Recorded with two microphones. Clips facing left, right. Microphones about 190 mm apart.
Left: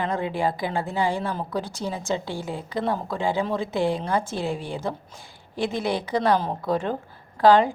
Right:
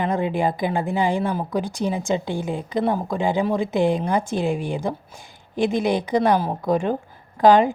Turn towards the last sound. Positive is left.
turn(degrees=-15)  # may be behind; listen again after turning